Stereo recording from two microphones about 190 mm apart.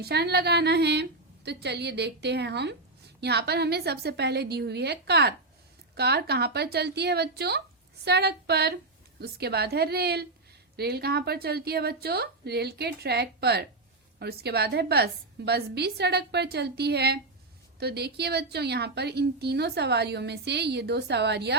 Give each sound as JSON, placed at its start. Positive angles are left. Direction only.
{"t": 0.0, "sound": "a woman's voice", "side_deg": -60}